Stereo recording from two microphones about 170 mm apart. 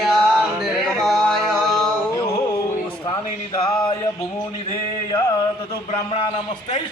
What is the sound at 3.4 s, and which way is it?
Music, 25° left (ahead or behind).